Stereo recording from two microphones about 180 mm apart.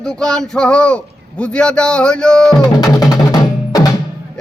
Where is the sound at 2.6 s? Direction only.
20° left (ahead or behind).